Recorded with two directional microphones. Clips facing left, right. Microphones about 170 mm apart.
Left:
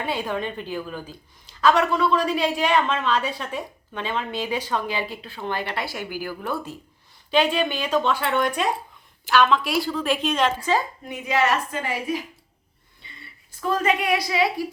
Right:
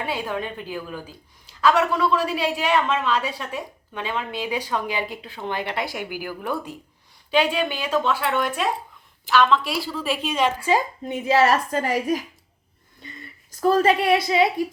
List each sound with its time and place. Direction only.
0.0 s a woman's voice: 10° right (ahead or behind)
11.0 s a woman's voice: 30° right (ahead or behind)
13.0 s a sound: 45° right (ahead or behind)
13.6 s a woman's voice: 35° right (ahead or behind)